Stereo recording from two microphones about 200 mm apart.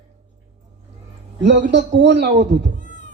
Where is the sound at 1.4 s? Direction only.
60° right (ahead or behind).